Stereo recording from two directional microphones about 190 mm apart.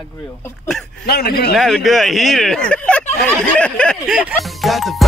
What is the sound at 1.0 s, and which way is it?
Speech, 55° left (ahead or behind).